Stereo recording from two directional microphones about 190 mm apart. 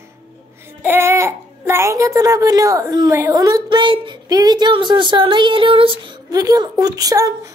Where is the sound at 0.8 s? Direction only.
10° right (ahead or behind).